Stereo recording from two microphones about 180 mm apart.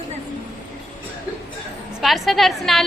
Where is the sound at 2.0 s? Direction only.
Centre (ahead or behind).